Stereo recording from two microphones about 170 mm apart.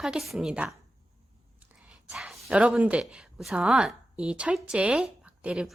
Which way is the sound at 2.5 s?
5° right (ahead or behind).